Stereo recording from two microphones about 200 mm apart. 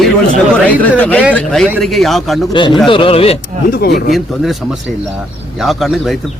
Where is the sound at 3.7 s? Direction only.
50° left (ahead or behind).